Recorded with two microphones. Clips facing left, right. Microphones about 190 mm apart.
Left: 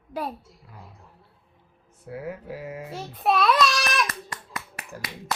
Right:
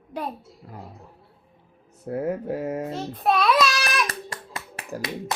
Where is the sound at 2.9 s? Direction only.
Centre (ahead or behind).